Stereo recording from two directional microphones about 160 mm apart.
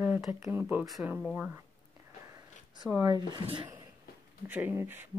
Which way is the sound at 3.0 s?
25° right (ahead or behind).